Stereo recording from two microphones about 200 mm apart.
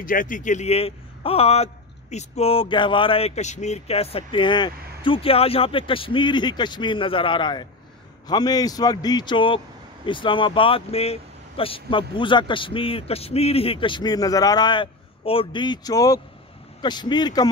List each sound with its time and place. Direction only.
0.0 s a man's voice: 45° left (ahead or behind); by 17.5 s 20° left (ahead or behind)